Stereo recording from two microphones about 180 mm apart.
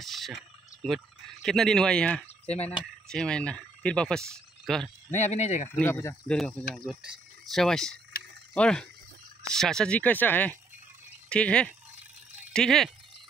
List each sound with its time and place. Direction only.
0.0 s speech: centre (ahead or behind)
2.4 s frog: 35° left (ahead or behind)
2.8 s speech: 5° left (ahead or behind)
5.1 s speech: 40° left (ahead or behind)
5.7 s speech: 10° left (ahead or behind)
8.2 s a sound: 60° left (ahead or behind)
8.5 s speech: 5° left (ahead or behind)